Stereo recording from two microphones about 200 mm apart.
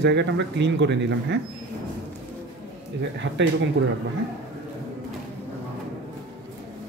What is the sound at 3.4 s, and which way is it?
Speech, 60° right (ahead or behind).